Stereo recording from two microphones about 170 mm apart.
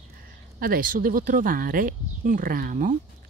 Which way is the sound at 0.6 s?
55° right (ahead or behind).